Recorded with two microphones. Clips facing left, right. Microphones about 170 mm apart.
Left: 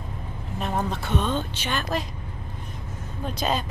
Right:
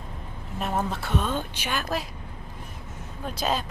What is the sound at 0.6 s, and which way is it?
Speech, 5° right (ahead or behind).